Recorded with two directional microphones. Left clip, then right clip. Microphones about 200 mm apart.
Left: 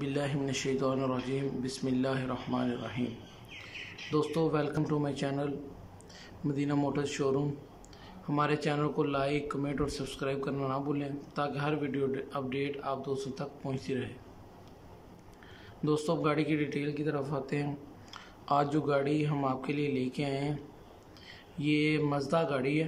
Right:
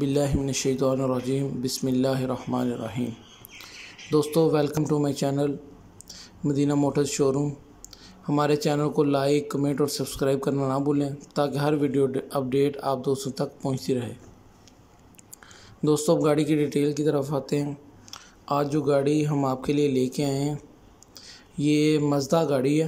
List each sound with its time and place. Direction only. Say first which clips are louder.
0.0 s speech: right 8 dB; 20° right (ahead or behind)
4.1 s speech: right 9 dB; 20° right (ahead or behind)
15.8 s speech: right 9 dB; 25° right (ahead or behind)